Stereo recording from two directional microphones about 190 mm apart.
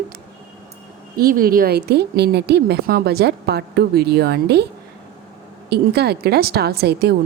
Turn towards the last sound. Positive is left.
turn(degrees=-55)  # may be behind; listen again after turning